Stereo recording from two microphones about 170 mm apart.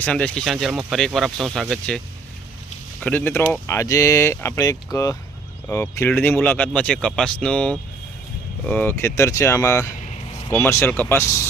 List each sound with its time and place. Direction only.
0.0 s speech: 5° left (ahead or behind)
3.0 s speech: 10° left (ahead or behind)